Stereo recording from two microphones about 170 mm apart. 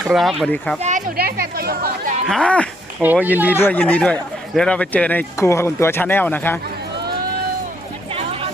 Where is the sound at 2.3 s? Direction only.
5° left (ahead or behind).